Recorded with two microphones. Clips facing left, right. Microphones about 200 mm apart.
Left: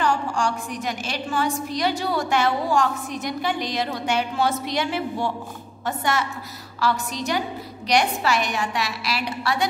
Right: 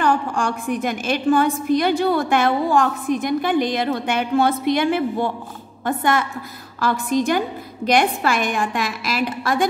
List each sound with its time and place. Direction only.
0.0 s a woman's voice: 55° right (ahead or behind)